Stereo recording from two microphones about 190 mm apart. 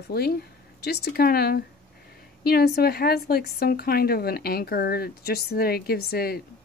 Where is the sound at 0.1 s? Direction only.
55° left (ahead or behind).